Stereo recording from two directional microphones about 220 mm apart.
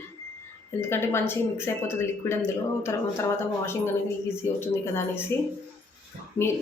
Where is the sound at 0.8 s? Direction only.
10° left (ahead or behind).